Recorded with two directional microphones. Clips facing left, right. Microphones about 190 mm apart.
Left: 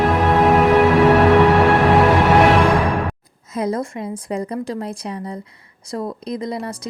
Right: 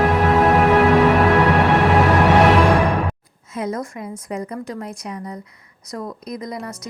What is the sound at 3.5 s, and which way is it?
Speech, 35° left (ahead or behind).